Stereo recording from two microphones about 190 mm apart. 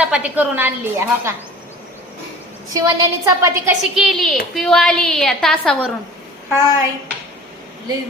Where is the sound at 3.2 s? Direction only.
15° right (ahead or behind).